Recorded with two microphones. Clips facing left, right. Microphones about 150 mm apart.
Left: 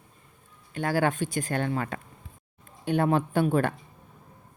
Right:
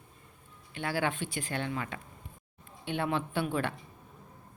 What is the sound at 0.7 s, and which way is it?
A woman's voice, 45° left (ahead or behind).